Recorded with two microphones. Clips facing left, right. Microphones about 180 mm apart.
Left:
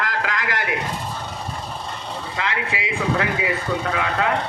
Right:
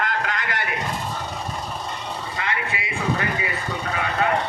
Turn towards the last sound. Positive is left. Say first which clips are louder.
# left 1 dB
turn(degrees=90)